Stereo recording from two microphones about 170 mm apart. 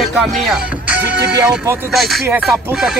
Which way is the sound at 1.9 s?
Centre (ahead or behind).